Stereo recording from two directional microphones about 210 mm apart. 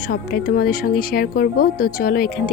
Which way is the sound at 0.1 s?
45° left (ahead or behind).